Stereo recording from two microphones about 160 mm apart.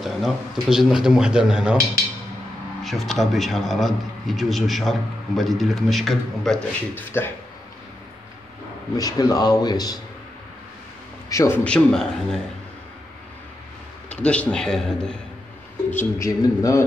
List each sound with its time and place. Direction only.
0.0 s a man's voice: centre (ahead or behind)
2.8 s a man's voice: centre (ahead or behind)
8.9 s speech: 20° left (ahead or behind)
11.2 s a man's voice: 20° left (ahead or behind)
14.0 s a man's voice: 10° left (ahead or behind)
15.9 s speech: 15° left (ahead or behind)